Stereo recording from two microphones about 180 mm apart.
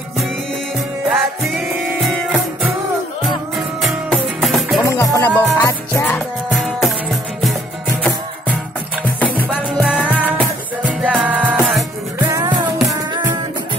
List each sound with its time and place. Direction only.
1.1 s music: centre (ahead or behind)
3.5 s music: centre (ahead or behind)
4.8 s music: 20° left (ahead or behind)
6.1 s music: centre (ahead or behind)
9.8 s music: 10° left (ahead or behind)
11.0 s music: 5° right (ahead or behind)